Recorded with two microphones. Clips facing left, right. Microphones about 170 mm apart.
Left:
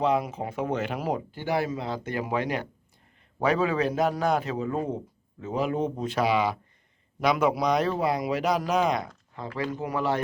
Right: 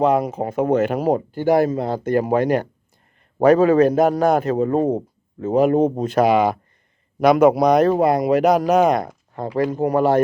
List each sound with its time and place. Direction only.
0.0 s speech: 45° right (ahead or behind)